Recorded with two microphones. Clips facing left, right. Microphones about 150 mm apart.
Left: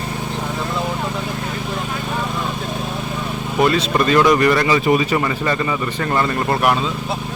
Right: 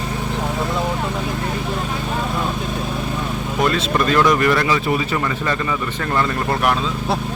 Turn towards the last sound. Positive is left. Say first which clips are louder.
# left 2 dB
turn(degrees=5)  # may be behind; listen again after turning